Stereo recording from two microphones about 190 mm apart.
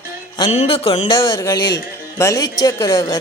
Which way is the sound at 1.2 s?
15° left (ahead or behind).